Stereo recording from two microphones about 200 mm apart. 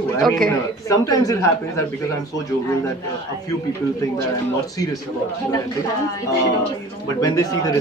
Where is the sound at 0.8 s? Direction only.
20° left (ahead or behind).